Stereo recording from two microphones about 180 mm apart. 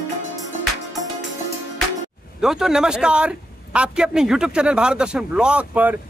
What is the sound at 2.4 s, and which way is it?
A man's voice, centre (ahead or behind).